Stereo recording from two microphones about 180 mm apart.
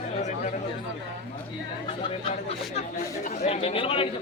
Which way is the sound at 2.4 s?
40° left (ahead or behind).